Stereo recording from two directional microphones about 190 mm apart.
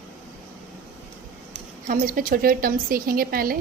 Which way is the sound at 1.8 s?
45° right (ahead or behind).